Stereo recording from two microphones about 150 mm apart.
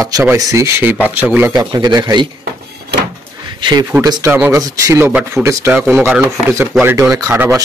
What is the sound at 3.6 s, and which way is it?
Speech, 25° right (ahead or behind).